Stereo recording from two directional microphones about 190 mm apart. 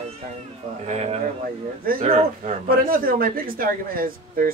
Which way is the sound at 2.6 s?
50° right (ahead or behind).